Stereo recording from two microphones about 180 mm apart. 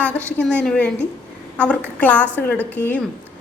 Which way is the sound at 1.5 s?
5° left (ahead or behind).